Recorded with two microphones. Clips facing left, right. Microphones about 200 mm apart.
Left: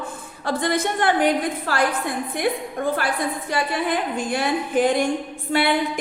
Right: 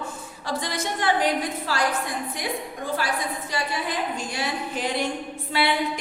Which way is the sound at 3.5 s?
55° left (ahead or behind).